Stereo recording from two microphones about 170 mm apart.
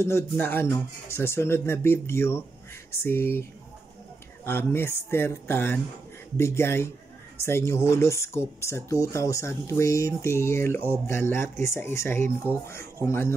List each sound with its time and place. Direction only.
0.0 s speech: 15° left (ahead or behind)
4.5 s speech: 15° left (ahead or behind)